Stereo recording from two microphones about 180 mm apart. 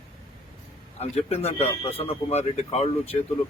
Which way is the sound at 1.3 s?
35° left (ahead or behind).